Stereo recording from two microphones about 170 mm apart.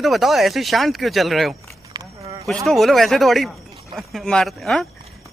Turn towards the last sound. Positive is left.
turn(degrees=0)  # may be behind; listen again after turning